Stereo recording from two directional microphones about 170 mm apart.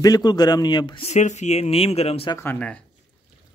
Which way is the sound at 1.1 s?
45° left (ahead or behind).